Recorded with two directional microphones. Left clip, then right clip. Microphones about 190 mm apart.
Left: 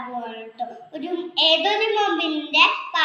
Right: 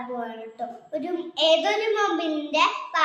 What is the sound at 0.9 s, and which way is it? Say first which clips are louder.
A child's voice: left 1 dB; 25° right (ahead or behind).